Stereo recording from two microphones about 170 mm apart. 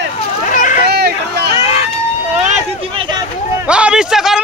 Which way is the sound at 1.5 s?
35° left (ahead or behind).